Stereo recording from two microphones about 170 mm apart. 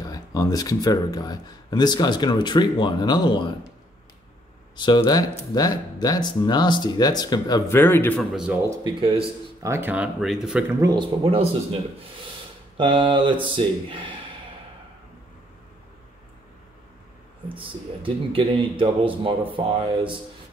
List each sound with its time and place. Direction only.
0.0 s speech: 20° left (ahead or behind)
4.8 s speech: 25° left (ahead or behind)
8.2 s a man's voice: centre (ahead or behind)
9.6 s speech: 15° right (ahead or behind)
10.8 s speech: 25° right (ahead or behind)
12.7 s speech: 30° right (ahead or behind)
17.6 s speech: 30° right (ahead or behind)